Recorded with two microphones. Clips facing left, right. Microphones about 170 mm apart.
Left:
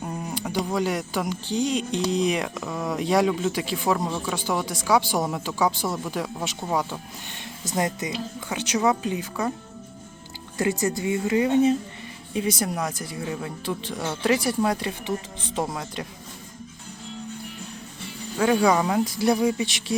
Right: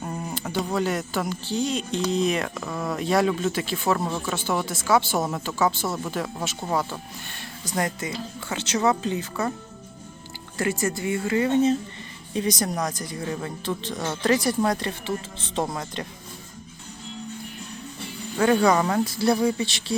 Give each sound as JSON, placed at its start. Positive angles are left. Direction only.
{"t": 0.0, "sound": "a sound", "side_deg": 0}
{"t": 0.3, "sound": "speech", "side_deg": 10}
{"t": 10.6, "sound": "speech", "side_deg": 20}
{"t": 18.3, "sound": "speech", "side_deg": 5}